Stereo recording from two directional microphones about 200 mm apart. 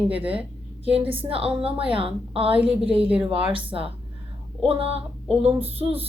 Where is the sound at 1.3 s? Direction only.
30° right (ahead or behind).